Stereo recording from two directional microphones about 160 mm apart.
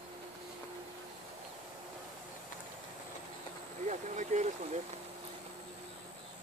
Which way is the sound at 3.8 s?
50° right (ahead or behind).